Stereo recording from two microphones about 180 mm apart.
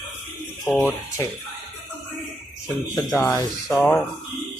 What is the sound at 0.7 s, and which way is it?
Speech, 10° left (ahead or behind).